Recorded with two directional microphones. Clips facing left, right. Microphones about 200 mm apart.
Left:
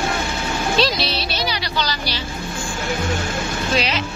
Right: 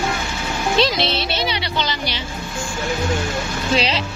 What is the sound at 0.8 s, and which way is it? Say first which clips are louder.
Speech: right 3 dB; 20° right (ahead or behind).